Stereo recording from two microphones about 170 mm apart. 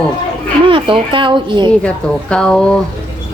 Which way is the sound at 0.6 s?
30° right (ahead or behind).